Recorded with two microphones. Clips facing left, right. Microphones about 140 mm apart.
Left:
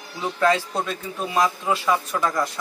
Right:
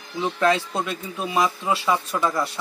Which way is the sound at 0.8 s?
20° right (ahead or behind).